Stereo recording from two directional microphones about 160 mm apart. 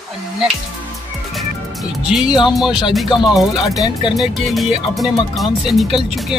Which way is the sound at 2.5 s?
5° right (ahead or behind).